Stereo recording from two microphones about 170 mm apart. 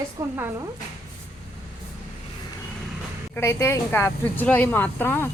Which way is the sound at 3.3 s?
15° left (ahead or behind).